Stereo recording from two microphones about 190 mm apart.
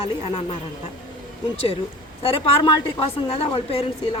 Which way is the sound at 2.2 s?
30° left (ahead or behind).